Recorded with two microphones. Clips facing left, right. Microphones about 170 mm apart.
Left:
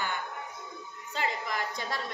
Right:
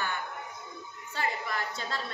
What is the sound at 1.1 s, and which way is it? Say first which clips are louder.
Speech: even; 15° left (ahead or behind).